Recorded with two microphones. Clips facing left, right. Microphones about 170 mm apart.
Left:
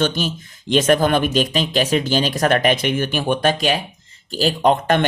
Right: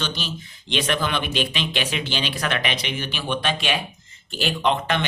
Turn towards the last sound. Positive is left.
turn(degrees=45)  # may be behind; listen again after turning